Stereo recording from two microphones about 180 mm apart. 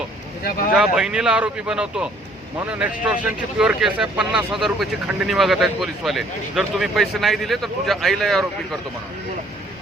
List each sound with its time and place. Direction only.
0.4 s speech: 50° left (ahead or behind)
0.7 s speech: 5° right (ahead or behind)